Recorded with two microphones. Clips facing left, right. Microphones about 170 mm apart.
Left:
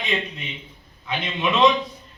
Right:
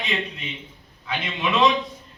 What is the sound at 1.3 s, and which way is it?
Speech, 20° left (ahead or behind).